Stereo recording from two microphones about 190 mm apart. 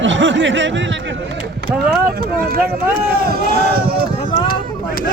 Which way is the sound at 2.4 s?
55° right (ahead or behind).